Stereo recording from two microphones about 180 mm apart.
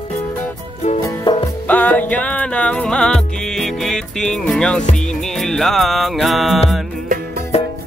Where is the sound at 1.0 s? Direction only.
20° left (ahead or behind).